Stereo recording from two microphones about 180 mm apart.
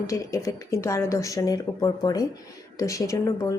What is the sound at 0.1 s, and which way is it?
Speech, 20° left (ahead or behind).